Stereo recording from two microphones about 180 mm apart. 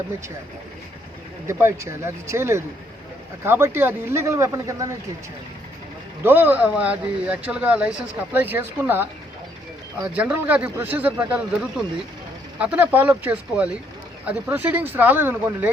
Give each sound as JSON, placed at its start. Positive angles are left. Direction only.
{"t": 1.5, "sound": "speech", "side_deg": -15}
{"t": 6.2, "sound": "speech", "side_deg": -10}
{"t": 12.5, "sound": "speech", "side_deg": -10}